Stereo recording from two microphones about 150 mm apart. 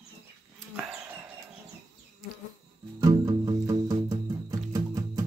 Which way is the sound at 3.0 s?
25° right (ahead or behind).